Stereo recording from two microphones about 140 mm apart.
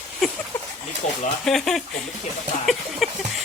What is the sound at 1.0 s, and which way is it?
Speech, 55° left (ahead or behind).